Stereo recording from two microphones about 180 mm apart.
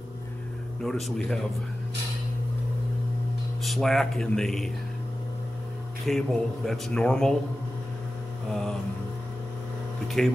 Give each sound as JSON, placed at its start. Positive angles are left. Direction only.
{"t": 0.8, "sound": "speech", "side_deg": 0}
{"t": 3.6, "sound": "speech", "side_deg": 0}
{"t": 6.0, "sound": "speech", "side_deg": 0}
{"t": 8.5, "sound": "speech", "side_deg": 0}
{"t": 10.0, "sound": "speech", "side_deg": 0}